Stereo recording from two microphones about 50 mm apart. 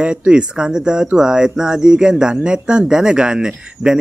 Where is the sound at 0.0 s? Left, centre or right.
Centre.